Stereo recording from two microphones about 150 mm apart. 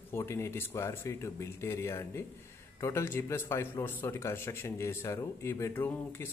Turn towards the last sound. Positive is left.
turn(degrees=15)  # may be behind; listen again after turning